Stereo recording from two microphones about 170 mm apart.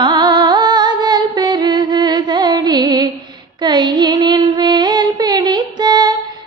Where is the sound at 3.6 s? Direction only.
25° right (ahead or behind).